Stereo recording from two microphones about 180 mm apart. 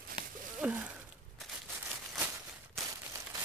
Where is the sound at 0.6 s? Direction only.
5° right (ahead or behind).